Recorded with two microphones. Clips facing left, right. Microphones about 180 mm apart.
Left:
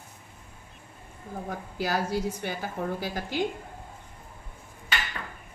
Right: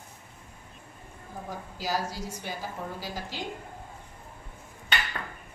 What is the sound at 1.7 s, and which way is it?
A woman's voice, 60° left (ahead or behind).